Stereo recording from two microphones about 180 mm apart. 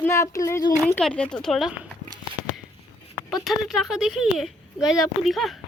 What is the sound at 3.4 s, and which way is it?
Speech, centre (ahead or behind).